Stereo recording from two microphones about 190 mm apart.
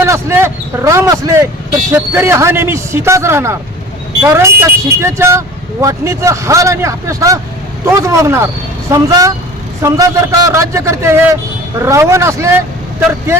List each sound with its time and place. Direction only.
0.0 s a man's voice: 15° right (ahead or behind)